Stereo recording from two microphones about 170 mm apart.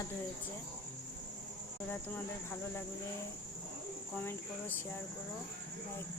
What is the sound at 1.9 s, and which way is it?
Speech, 10° left (ahead or behind).